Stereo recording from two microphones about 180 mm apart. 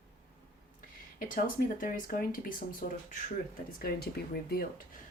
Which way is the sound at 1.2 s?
50° left (ahead or behind).